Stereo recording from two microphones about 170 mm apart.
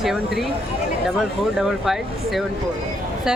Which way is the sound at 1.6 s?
Centre (ahead or behind).